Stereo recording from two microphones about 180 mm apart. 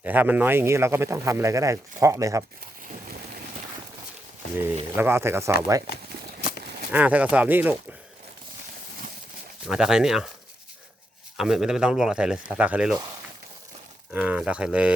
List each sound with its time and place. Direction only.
0.0 s speech: 10° right (ahead or behind)
4.5 s speech: 10° right (ahead or behind)
6.9 s speech: 10° right (ahead or behind)
9.6 s speech: 5° right (ahead or behind)
11.3 s speech: 5° right (ahead or behind)
14.1 s speech: 5° right (ahead or behind)